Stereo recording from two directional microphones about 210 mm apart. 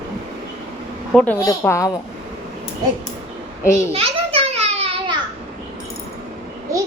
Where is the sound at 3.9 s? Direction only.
30° right (ahead or behind).